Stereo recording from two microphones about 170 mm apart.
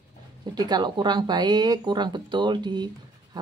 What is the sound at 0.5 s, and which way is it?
Speech, 25° right (ahead or behind).